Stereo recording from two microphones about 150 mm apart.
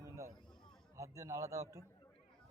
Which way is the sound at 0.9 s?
20° right (ahead or behind).